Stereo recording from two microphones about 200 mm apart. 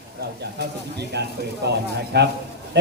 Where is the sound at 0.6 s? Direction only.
55° right (ahead or behind).